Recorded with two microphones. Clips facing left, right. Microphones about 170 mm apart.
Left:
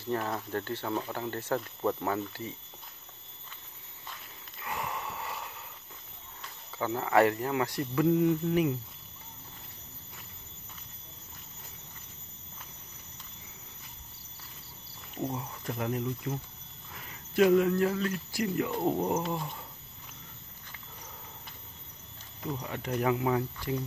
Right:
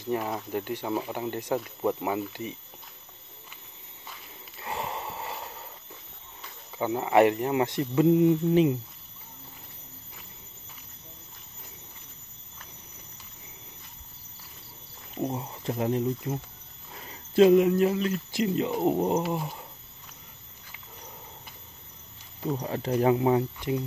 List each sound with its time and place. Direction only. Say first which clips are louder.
0.0 s speech: right 3 dB; 15° right (ahead or behind)
4.6 s gasp: right 3 dB; 30° right (ahead or behind)
6.7 s speech: right 3 dB; 20° right (ahead or behind)
15.1 s speech: right 4 dB; 20° right (ahead or behind)
22.4 s speech: right 6 dB; 30° right (ahead or behind)